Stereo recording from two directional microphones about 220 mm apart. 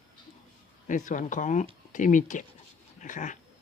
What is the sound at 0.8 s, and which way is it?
Speech, 35° left (ahead or behind).